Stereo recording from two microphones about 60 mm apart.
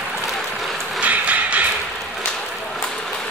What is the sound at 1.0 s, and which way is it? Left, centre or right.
Music, right.